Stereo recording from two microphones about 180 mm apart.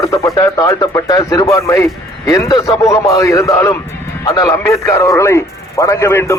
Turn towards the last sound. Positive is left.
turn(degrees=15)  # may be behind; listen again after turning